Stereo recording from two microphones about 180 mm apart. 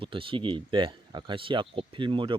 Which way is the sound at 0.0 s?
30° right (ahead or behind).